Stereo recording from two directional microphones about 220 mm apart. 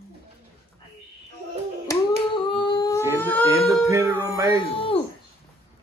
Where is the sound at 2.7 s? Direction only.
15° left (ahead or behind).